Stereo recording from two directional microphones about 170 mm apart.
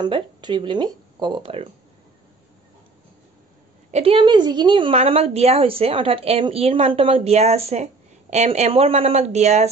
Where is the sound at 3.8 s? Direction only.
40° right (ahead or behind).